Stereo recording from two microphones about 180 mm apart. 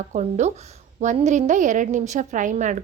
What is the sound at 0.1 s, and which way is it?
A woman's voice, 40° right (ahead or behind).